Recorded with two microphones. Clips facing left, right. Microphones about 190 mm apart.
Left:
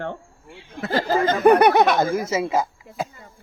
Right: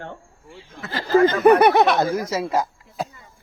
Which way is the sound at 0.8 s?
45° left (ahead or behind).